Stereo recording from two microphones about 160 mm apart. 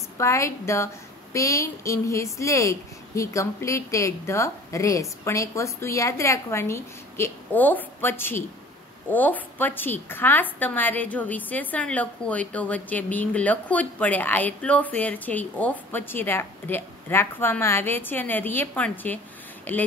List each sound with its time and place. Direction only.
0.2 s a woman's voice: 20° left (ahead or behind)